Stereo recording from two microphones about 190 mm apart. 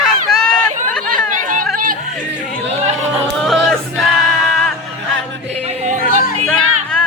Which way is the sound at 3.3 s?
Centre (ahead or behind).